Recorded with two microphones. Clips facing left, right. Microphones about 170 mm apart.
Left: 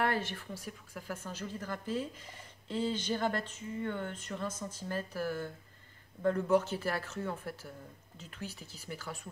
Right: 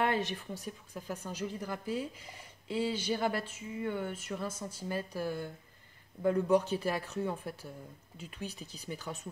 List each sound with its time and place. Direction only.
0.0 s speech: 20° right (ahead or behind)